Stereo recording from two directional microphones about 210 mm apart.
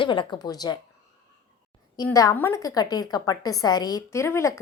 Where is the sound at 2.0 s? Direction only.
15° left (ahead or behind).